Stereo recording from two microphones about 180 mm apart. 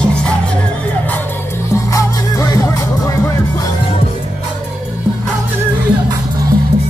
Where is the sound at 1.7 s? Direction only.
20° left (ahead or behind).